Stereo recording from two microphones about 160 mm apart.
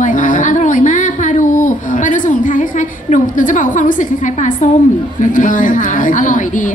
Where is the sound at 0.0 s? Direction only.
55° left (ahead or behind).